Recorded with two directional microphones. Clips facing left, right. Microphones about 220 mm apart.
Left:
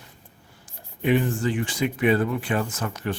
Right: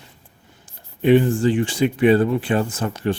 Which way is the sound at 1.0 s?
30° right (ahead or behind).